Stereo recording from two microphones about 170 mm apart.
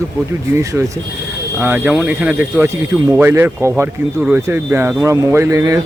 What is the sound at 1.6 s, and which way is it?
Speech, 10° right (ahead or behind).